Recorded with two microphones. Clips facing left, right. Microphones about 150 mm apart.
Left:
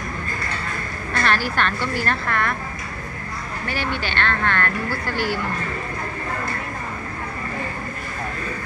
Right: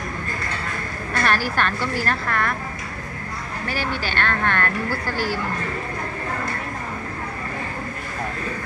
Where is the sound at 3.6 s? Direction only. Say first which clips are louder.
Even; 35° right (ahead or behind).